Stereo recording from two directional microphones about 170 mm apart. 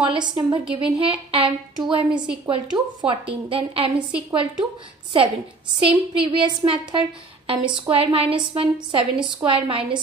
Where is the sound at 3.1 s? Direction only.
35° right (ahead or behind).